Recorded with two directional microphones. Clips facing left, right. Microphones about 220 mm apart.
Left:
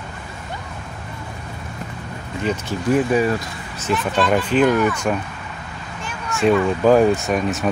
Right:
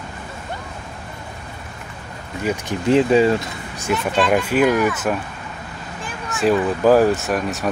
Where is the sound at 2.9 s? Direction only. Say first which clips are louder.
Right 3 dB; 25° right (ahead or behind).